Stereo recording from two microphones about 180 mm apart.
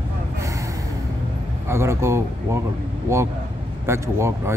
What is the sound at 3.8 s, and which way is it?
Speech, 15° right (ahead or behind).